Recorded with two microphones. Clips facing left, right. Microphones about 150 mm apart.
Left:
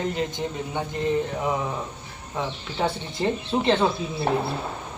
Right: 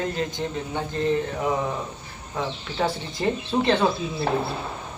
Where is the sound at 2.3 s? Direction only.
25° left (ahead or behind).